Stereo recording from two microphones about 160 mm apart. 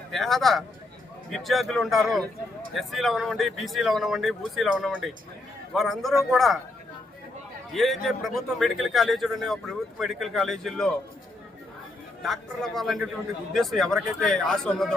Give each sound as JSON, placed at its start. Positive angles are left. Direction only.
{"t": 0.1, "sound": "a man's voice", "side_deg": 0}
{"t": 7.7, "sound": "a man's voice", "side_deg": 0}
{"t": 12.2, "sound": "a man's voice", "side_deg": 0}